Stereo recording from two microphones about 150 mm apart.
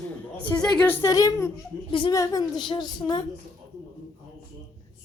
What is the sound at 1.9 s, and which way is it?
Speech, 35° left (ahead or behind).